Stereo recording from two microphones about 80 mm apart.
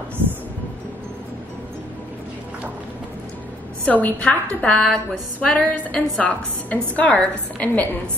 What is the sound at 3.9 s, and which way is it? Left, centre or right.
A woman's voice, centre.